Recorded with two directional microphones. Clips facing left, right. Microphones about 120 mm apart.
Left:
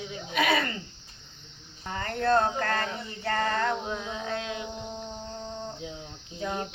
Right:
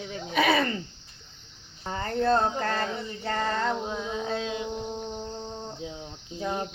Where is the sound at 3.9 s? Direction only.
25° right (ahead or behind).